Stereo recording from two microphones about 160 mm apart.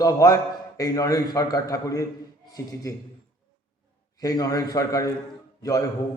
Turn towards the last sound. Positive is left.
turn(degrees=20)  # may be behind; listen again after turning